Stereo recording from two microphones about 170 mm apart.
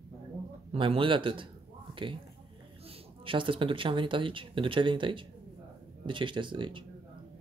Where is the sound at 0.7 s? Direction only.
30° right (ahead or behind).